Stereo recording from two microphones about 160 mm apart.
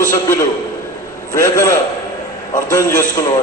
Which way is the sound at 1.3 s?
20° left (ahead or behind).